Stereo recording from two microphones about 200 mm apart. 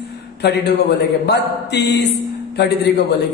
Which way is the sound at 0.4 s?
55° left (ahead or behind).